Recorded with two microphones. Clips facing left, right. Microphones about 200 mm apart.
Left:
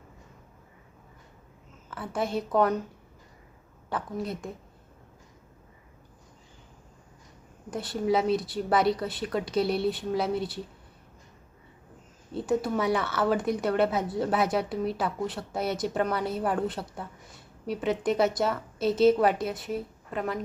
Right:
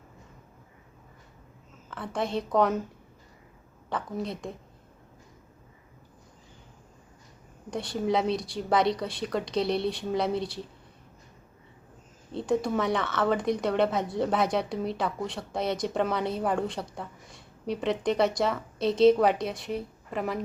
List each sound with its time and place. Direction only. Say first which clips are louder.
1.9 s speech: even; 5° left (ahead or behind)
3.8 s speech: even; 5° left (ahead or behind)
7.7 s speech: left 1 dB; 5° left (ahead or behind)
12.3 s speech: even; 5° left (ahead or behind)